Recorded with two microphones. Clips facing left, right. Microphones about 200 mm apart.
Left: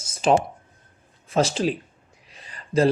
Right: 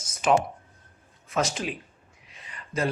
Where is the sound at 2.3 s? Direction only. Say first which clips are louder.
Left 10 dB; 35° left (ahead or behind).